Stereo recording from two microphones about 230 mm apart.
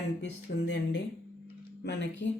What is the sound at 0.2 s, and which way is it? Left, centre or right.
Speech, left.